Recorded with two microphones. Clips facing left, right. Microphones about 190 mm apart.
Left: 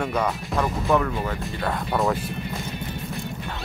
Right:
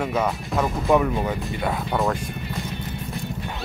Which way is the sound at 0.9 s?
15° right (ahead or behind).